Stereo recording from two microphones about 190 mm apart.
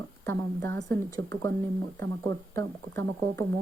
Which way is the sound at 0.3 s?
15° left (ahead or behind).